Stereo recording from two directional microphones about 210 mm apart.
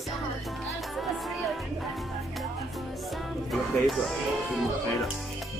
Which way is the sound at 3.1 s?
Centre (ahead or behind).